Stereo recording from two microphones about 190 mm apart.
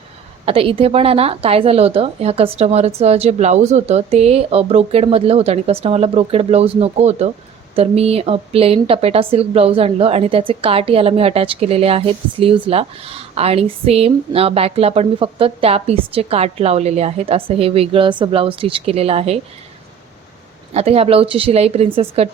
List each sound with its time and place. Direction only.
0.4 s speech: 30° right (ahead or behind)
20.7 s speech: 30° right (ahead or behind)